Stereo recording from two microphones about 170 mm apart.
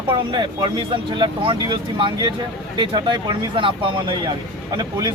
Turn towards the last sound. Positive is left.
turn(degrees=-25)  # may be behind; listen again after turning